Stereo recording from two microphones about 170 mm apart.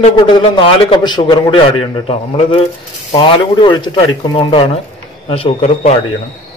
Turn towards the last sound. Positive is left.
turn(degrees=45)  # may be behind; listen again after turning